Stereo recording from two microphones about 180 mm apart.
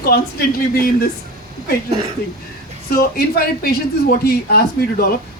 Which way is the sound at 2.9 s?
60° left (ahead or behind).